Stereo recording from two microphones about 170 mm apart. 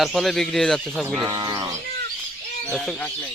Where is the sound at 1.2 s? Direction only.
25° right (ahead or behind).